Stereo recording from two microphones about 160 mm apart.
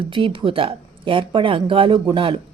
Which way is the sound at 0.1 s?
35° right (ahead or behind).